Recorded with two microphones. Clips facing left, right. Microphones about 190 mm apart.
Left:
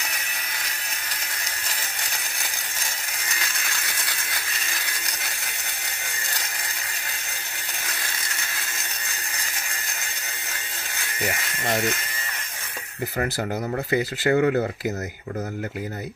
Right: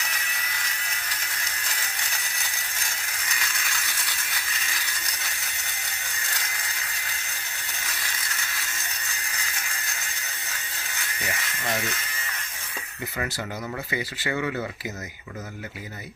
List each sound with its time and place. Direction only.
13.9 s speech: 45° left (ahead or behind)